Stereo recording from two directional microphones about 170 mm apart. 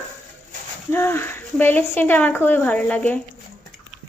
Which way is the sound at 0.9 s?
15° left (ahead or behind).